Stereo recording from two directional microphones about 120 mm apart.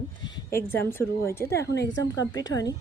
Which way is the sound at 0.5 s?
20° left (ahead or behind).